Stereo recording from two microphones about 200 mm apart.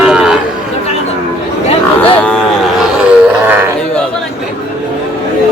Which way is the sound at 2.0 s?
5° left (ahead or behind).